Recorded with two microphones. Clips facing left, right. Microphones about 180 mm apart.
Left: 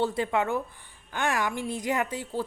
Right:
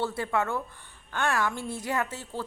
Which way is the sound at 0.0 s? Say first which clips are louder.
Left 2 dB; 20° left (ahead or behind).